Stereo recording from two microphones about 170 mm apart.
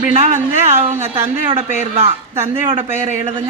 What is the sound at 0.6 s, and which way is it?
A woman's voice, 40° right (ahead or behind).